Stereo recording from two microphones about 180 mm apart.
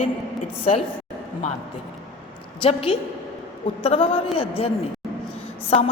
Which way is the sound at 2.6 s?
35° left (ahead or behind).